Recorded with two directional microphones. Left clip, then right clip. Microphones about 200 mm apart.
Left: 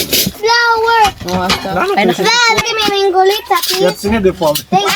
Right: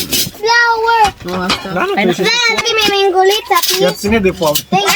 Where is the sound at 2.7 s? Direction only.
5° right (ahead or behind).